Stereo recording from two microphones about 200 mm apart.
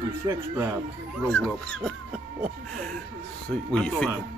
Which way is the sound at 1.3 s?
5° left (ahead or behind).